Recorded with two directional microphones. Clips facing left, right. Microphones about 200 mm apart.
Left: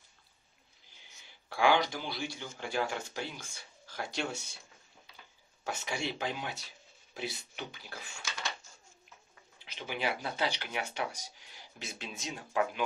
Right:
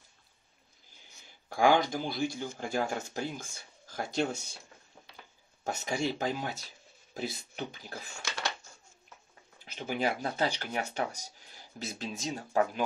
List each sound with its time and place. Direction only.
1.5 s speech: 45° right (ahead or behind)
5.6 s speech: 40° right (ahead or behind)
9.7 s speech: 45° right (ahead or behind)